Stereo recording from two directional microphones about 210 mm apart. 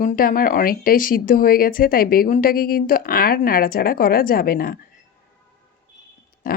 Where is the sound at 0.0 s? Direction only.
40° left (ahead or behind).